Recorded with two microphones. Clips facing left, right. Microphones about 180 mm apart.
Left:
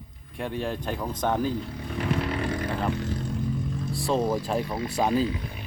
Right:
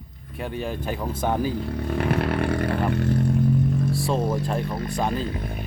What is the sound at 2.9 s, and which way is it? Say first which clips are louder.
Vehicle: right 6 dB; 60° right (ahead or behind).